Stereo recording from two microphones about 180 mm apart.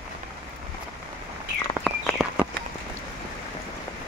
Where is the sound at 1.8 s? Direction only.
Centre (ahead or behind).